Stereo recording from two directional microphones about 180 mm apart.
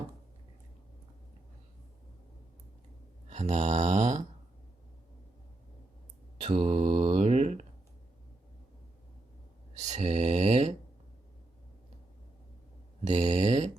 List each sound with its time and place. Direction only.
3.2 s mantra: 40° right (ahead or behind)
6.4 s mantra: 30° right (ahead or behind)
9.9 s mantra: 40° right (ahead or behind)
13.1 s a sound: 35° right (ahead or behind)